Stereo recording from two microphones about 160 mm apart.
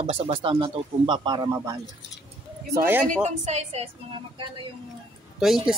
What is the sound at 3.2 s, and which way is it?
Speech, 45° right (ahead or behind).